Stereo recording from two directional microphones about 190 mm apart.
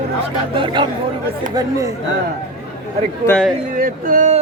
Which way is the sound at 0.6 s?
25° right (ahead or behind).